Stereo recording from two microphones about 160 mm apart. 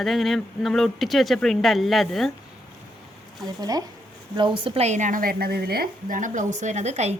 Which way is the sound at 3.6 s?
25° right (ahead or behind).